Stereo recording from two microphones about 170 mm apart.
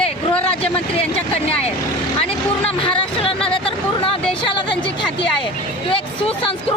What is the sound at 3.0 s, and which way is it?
A woman's voice, 35° left (ahead or behind).